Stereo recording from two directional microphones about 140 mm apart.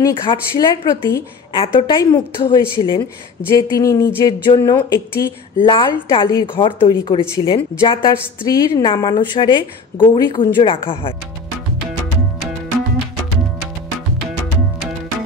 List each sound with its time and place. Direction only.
0.0 s a woman's voice: 35° left (ahead or behind)
0.5 s a woman's voice: 25° left (ahead or behind)
1.6 s a woman's voice: 40° left (ahead or behind)
3.7 s a woman's voice: 25° left (ahead or behind)
4.6 s a sound: 20° left (ahead or behind)
5.6 s a woman's voice: 35° left (ahead or behind)
8.5 s a woman's voice: 25° left (ahead or behind)